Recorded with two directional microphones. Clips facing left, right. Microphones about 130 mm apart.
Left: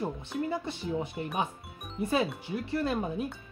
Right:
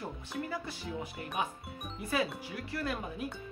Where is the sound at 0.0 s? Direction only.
25° left (ahead or behind).